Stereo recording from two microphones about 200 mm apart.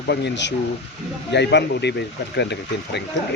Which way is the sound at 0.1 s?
60° left (ahead or behind).